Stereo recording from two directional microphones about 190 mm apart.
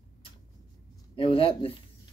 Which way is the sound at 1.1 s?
30° left (ahead or behind).